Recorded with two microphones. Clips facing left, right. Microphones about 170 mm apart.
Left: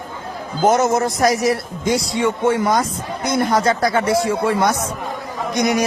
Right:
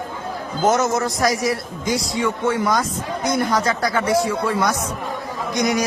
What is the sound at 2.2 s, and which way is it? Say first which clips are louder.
Speech: left 3 dB; 60° left (ahead or behind).